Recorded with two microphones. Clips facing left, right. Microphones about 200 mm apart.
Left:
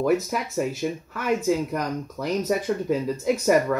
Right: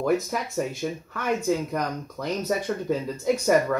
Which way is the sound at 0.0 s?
5° left (ahead or behind).